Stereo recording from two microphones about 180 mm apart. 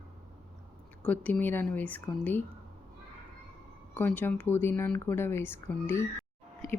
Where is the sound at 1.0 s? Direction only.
10° left (ahead or behind).